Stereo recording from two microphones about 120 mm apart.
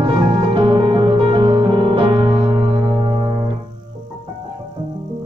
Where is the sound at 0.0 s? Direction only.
45° right (ahead or behind).